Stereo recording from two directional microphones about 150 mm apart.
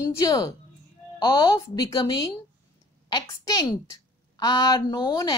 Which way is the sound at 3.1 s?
25° left (ahead or behind).